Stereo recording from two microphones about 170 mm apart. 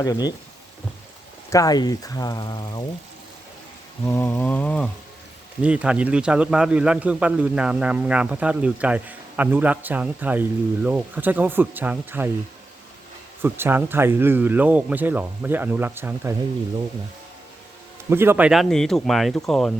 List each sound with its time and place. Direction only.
0.0 s speech: 25° left (ahead or behind)
1.5 s speech: 20° left (ahead or behind)
4.0 s rain: 15° left (ahead or behind)
5.6 s a man's voice: 5° right (ahead or behind)
13.4 s a man's voice: 10° right (ahead or behind)
18.1 s speech: 15° right (ahead or behind); by 19.7 s centre (ahead or behind)